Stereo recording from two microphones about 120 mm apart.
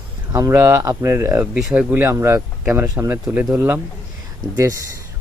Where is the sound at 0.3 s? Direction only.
25° right (ahead or behind).